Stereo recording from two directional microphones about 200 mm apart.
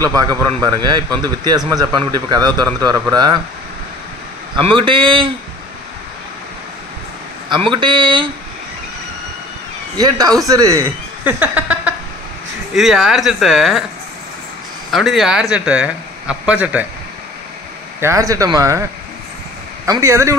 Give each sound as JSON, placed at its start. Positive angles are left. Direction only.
{"t": 0.0, "sound": "a man's voice", "side_deg": -15}
{"t": 4.6, "sound": "a man's voice", "side_deg": -25}
{"t": 7.7, "sound": "a man's voice", "side_deg": -25}
{"t": 9.9, "sound": "a man's voice", "side_deg": -20}
{"t": 14.9, "sound": "a man's voice", "side_deg": 0}
{"t": 18.0, "sound": "a man's voice", "side_deg": -15}
{"t": 19.9, "sound": "a man's voice", "side_deg": -15}